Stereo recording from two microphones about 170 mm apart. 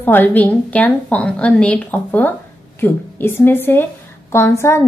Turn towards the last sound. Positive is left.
turn(degrees=15)  # may be behind; listen again after turning